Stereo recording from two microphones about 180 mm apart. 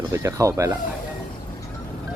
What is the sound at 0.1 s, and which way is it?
Speech, 15° right (ahead or behind).